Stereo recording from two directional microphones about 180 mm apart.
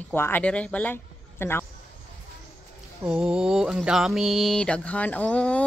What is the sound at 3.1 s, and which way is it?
Mantra, 5° right (ahead or behind).